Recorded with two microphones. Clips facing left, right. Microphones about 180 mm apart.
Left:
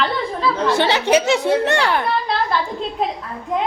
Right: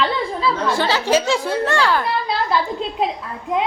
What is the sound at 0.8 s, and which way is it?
A woman's voice, 20° left (ahead or behind).